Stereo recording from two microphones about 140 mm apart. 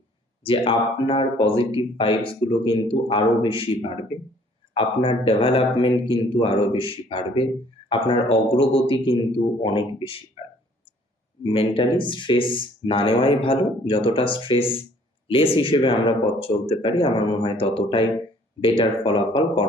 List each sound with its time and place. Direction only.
0.4 s speech: 40° left (ahead or behind)
10.4 s a sound: 40° left (ahead or behind)
11.4 s speech: 40° left (ahead or behind)